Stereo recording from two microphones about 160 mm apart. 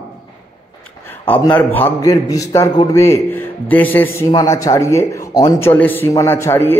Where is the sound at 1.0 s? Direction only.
10° left (ahead or behind).